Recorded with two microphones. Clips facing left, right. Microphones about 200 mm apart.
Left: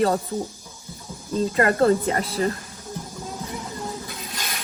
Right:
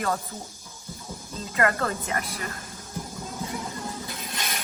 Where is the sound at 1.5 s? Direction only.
30° left (ahead or behind).